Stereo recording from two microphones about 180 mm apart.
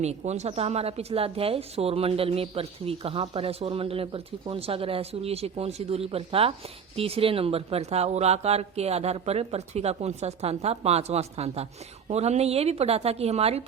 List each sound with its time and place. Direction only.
0.0 s speech: 40° right (ahead or behind)